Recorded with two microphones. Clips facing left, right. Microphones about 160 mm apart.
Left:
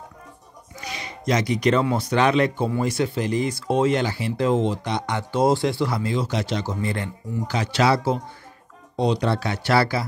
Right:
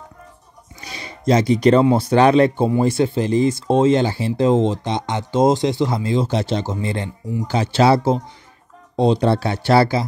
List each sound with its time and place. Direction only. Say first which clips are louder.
0.7 s speech: left 1 dB; 30° right (ahead or behind)